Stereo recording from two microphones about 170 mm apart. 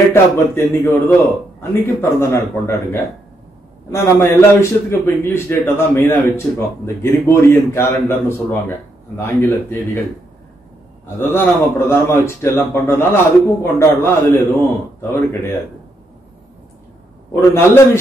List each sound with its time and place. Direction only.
0.1 s a man's voice: 15° left (ahead or behind)
11.1 s a man's voice: 15° left (ahead or behind)
17.3 s a man's voice: 15° left (ahead or behind)